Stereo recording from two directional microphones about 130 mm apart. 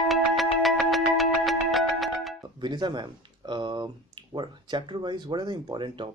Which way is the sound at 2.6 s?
35° right (ahead or behind).